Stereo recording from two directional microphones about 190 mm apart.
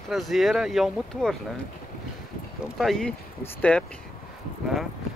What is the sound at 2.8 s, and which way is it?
Speech, centre (ahead or behind).